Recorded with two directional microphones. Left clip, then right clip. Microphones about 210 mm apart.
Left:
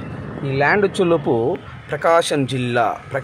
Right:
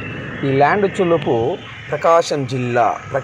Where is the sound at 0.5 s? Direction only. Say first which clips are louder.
Right 3 dB; centre (ahead or behind).